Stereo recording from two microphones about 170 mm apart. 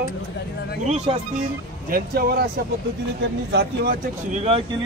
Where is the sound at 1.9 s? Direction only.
60° right (ahead or behind).